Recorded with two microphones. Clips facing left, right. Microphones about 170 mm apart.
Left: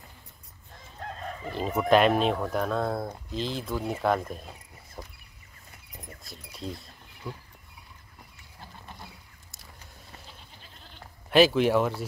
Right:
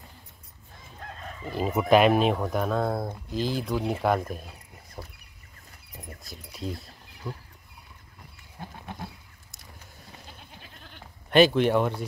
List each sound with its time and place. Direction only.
1.5 s speech: 5° right (ahead or behind)
5.0 s a sound: 5° right (ahead or behind)
8.5 s goat: 65° right (ahead or behind)
11.2 s speech: centre (ahead or behind)